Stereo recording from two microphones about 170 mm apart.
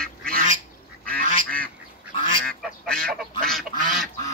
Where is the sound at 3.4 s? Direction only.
Centre (ahead or behind).